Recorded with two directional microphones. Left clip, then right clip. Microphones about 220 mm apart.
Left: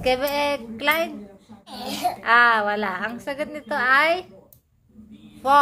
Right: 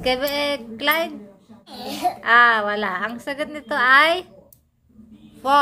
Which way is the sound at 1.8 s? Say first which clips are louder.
Right 2 dB; 15° left (ahead or behind).